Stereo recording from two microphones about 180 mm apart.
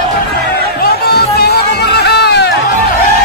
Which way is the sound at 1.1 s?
60° left (ahead or behind).